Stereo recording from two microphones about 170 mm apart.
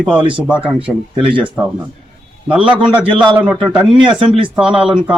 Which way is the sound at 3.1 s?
30° right (ahead or behind).